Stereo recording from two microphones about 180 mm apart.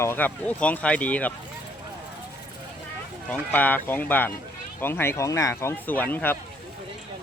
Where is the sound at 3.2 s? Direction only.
10° left (ahead or behind).